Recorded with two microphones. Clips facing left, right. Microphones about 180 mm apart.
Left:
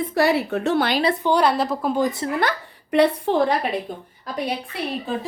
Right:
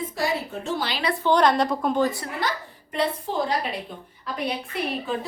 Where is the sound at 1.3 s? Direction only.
10° left (ahead or behind).